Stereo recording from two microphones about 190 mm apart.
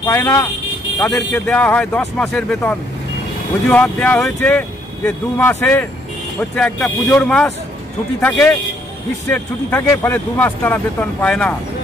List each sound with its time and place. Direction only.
0.0 s speech: 15° left (ahead or behind)